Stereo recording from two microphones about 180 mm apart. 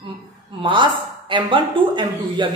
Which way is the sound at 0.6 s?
25° right (ahead or behind).